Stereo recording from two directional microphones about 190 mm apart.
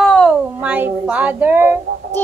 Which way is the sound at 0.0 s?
Centre (ahead or behind).